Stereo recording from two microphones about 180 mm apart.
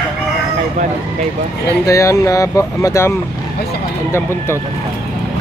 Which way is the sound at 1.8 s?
15° left (ahead or behind).